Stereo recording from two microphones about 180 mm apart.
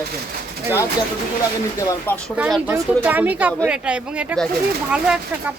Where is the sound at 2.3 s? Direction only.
5° right (ahead or behind).